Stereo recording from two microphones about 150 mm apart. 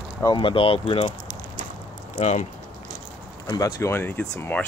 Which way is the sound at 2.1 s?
50° left (ahead or behind).